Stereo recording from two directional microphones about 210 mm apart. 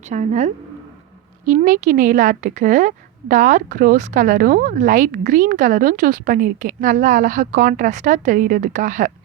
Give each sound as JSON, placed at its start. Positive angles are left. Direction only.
{"t": 0.1, "sound": "speech", "side_deg": -35}